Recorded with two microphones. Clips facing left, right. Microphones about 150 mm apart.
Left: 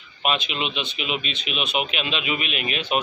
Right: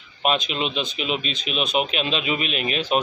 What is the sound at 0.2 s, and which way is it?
Speech, 40° right (ahead or behind).